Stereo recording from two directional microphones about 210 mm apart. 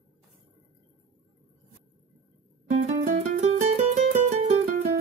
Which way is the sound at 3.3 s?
30° right (ahead or behind).